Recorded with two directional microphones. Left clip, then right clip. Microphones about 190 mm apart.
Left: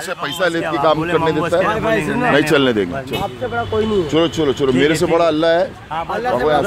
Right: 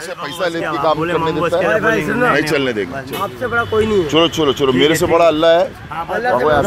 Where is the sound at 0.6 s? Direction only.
10° left (ahead or behind).